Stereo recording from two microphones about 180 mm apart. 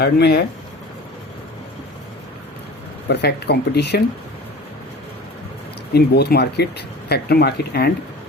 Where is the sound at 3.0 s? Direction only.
70° left (ahead or behind).